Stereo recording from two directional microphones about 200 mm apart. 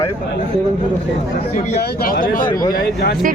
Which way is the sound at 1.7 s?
45° left (ahead or behind).